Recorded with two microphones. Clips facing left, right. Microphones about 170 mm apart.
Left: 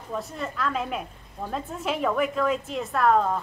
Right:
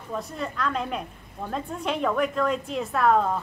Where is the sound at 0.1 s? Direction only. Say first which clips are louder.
Even; centre (ahead or behind).